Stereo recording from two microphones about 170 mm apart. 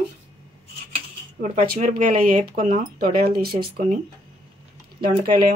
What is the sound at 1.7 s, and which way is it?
Speech, 50° right (ahead or behind).